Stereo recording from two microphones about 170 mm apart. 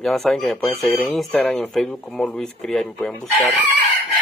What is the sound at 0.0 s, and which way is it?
Speech, centre (ahead or behind).